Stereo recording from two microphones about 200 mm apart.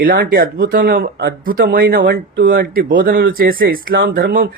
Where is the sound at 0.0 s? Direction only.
45° right (ahead or behind).